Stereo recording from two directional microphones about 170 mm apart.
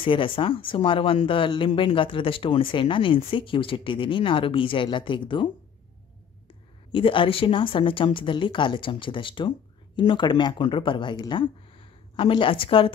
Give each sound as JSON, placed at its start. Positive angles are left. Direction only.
{"t": 0.0, "sound": "speech", "side_deg": 30}
{"t": 6.9, "sound": "speech", "side_deg": 30}